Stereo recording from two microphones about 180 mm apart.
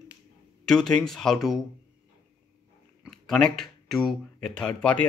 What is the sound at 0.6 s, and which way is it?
Speech, 5° left (ahead or behind).